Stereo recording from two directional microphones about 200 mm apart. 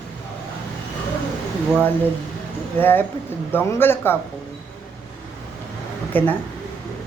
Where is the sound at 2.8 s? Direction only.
10° left (ahead or behind).